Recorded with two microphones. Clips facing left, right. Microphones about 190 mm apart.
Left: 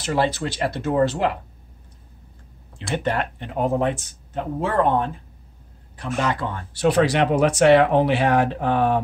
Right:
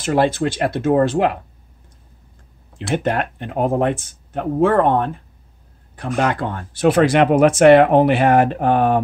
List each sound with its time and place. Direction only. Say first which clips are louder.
0.0 s speech: right 5 dB; 50° right (ahead or behind)
2.9 s speech: right 4 dB; 50° right (ahead or behind)
6.1 s speech: right 4 dB; 55° right (ahead or behind)